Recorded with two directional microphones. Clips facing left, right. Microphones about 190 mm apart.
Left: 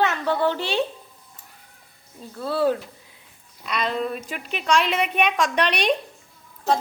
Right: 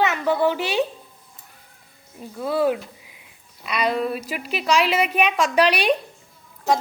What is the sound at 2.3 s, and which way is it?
A woman's voice, 15° right (ahead or behind).